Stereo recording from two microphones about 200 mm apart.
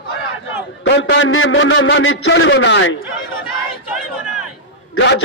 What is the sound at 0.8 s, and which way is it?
A man's voice, 60° left (ahead or behind).